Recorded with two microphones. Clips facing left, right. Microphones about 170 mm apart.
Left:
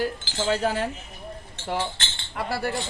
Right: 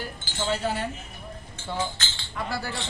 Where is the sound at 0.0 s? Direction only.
90° left.